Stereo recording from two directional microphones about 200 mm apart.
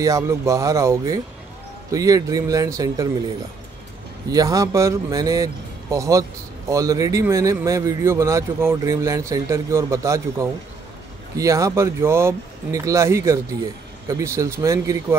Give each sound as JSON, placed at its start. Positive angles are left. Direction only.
{"t": 0.0, "sound": "speech", "side_deg": -15}
{"t": 4.3, "sound": "speech", "side_deg": -15}